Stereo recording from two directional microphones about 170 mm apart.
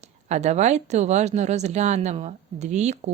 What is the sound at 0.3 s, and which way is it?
A woman's voice, 40° right (ahead or behind).